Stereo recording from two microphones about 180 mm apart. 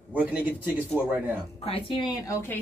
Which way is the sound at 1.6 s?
30° left (ahead or behind).